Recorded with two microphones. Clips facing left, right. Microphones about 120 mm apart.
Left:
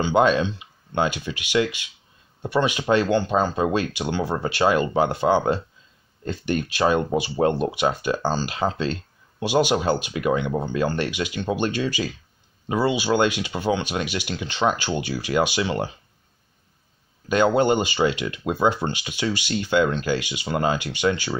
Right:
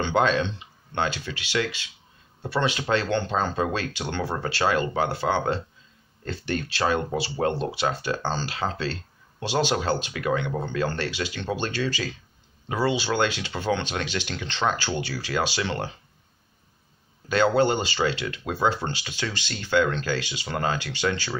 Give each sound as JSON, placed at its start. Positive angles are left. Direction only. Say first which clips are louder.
{"t": 0.0, "sound": "speech", "louder": "left 4 dB", "side_deg": 15}
{"t": 17.3, "sound": "speech", "louder": "left 2 dB", "side_deg": 15}